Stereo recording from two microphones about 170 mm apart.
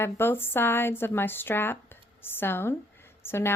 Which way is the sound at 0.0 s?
15° left (ahead or behind).